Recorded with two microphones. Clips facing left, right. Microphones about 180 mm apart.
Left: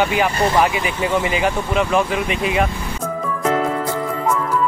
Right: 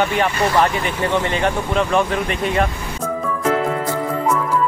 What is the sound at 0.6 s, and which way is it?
Speech, 5° left (ahead or behind).